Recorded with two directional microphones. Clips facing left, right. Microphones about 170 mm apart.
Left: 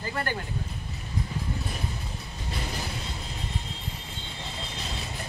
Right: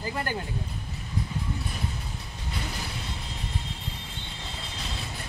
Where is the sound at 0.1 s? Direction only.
15° right (ahead or behind).